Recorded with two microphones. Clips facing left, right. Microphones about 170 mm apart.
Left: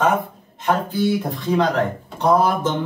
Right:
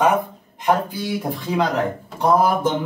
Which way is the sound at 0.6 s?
10° right (ahead or behind).